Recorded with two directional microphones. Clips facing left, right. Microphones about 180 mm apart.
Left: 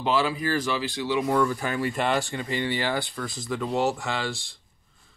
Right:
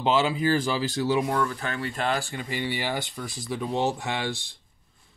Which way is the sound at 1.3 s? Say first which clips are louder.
Left 4 dB; 10° left (ahead or behind).